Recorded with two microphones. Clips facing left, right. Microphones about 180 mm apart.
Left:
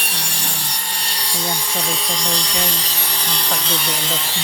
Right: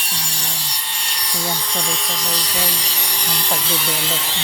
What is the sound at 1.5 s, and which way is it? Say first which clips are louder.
Wood: left 1 dB; 5° left (ahead or behind).